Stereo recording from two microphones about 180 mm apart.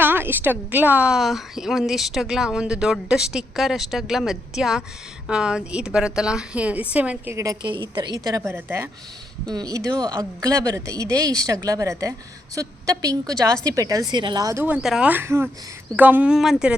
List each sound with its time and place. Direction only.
0.0 s a woman's voice: 10° right (ahead or behind)
7.6 s a woman's voice: 25° right (ahead or behind); by 16.7 s 5° right (ahead or behind)